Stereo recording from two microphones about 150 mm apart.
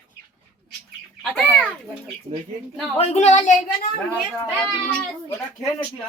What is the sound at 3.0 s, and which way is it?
Speech, 45° left (ahead or behind).